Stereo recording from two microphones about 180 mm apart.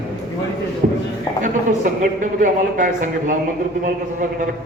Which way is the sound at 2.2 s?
45° right (ahead or behind).